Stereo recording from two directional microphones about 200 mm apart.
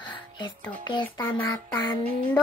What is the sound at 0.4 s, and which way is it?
Child singing, 20° left (ahead or behind).